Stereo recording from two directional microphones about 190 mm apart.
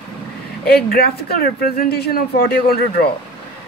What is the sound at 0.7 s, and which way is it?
Speech, 55° left (ahead or behind).